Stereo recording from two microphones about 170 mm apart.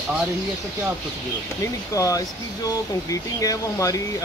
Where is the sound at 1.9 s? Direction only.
20° left (ahead or behind).